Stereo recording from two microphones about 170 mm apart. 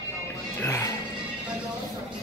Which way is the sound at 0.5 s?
15° left (ahead or behind).